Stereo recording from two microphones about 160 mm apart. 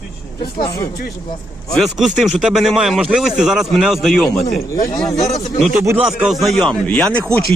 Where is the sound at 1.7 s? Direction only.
Centre (ahead or behind).